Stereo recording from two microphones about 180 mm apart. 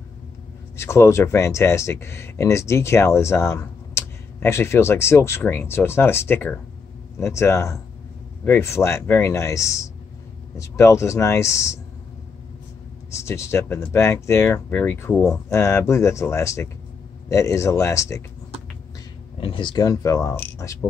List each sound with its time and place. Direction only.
0.7 s speech: 15° left (ahead or behind)
13.1 s speech: 15° left (ahead or behind)
19.4 s speech: 25° left (ahead or behind)